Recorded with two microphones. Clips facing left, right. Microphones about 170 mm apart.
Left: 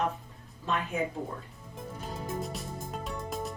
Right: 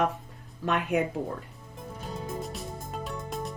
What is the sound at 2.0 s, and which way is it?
Music, centre (ahead or behind).